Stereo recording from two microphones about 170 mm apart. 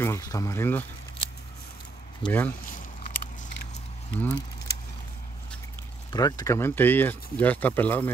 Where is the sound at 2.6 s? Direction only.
50° left (ahead or behind).